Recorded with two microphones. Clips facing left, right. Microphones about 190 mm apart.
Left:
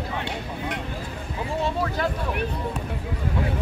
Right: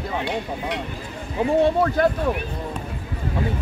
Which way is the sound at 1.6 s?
55° right (ahead or behind).